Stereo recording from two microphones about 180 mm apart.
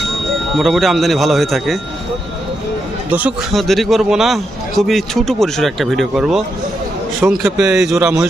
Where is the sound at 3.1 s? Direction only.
10° right (ahead or behind).